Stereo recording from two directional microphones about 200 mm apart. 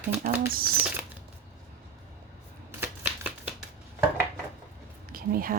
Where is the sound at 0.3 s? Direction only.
10° right (ahead or behind).